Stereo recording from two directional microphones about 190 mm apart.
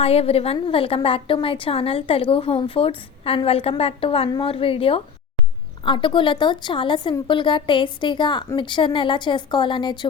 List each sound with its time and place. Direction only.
0.0 s a woman's voice: 30° left (ahead or behind)